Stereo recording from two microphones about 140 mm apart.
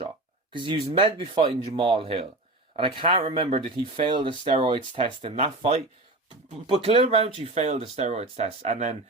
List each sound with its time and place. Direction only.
0.5 s speech: 35° right (ahead or behind); by 9.0 s 50° right (ahead or behind)